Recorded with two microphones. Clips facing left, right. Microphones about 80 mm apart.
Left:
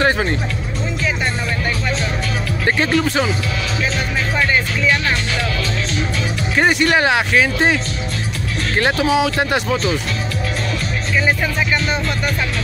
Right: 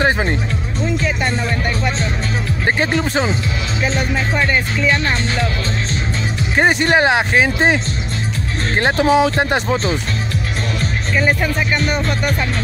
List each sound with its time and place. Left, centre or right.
0.0 s music: right
2.6 s speech: right
6.5 s speech: right